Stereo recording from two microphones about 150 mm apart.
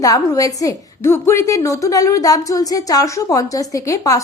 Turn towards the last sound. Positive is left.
turn(degrees=20)  # may be behind; listen again after turning